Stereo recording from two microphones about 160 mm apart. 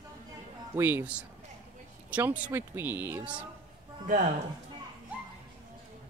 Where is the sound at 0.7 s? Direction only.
15° right (ahead or behind).